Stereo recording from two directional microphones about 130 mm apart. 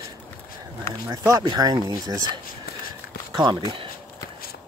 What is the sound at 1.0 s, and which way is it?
Speech, 25° right (ahead or behind).